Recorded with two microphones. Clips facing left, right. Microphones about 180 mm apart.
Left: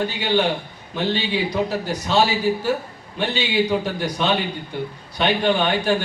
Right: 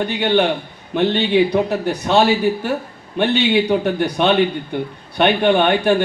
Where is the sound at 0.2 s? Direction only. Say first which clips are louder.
Right 5 dB; 60° right (ahead or behind).